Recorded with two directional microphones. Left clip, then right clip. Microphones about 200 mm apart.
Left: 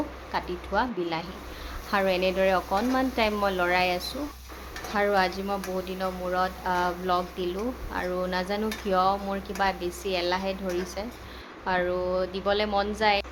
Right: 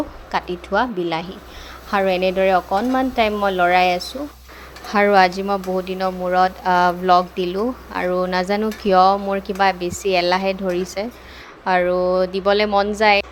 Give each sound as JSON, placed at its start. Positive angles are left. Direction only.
{"t": 0.3, "sound": "speech", "side_deg": -35}
{"t": 4.9, "sound": "speech", "side_deg": -40}